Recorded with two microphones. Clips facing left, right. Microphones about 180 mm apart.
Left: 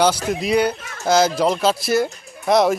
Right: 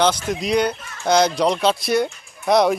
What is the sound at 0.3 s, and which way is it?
Speech, 5° left (ahead or behind).